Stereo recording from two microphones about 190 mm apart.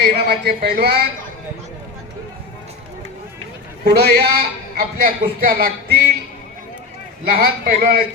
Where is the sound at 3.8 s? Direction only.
55° right (ahead or behind).